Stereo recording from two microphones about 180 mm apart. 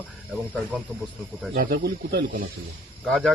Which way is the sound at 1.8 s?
65° right (ahead or behind).